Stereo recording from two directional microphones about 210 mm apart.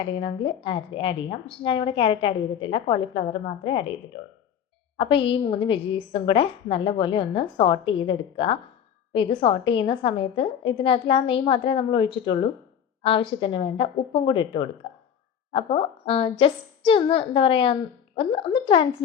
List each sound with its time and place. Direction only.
0.0 s a woman's voice: 25° left (ahead or behind)